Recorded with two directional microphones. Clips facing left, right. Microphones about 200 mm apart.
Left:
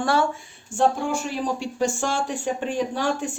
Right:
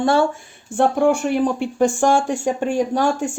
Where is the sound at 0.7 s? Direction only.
60° right (ahead or behind).